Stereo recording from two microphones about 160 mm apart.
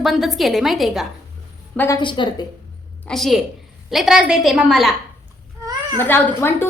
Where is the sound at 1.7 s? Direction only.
10° left (ahead or behind).